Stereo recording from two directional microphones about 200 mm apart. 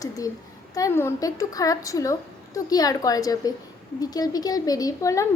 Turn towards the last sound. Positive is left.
turn(degrees=15)  # may be behind; listen again after turning